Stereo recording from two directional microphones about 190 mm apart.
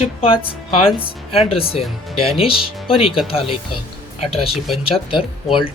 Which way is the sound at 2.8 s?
30° left (ahead or behind).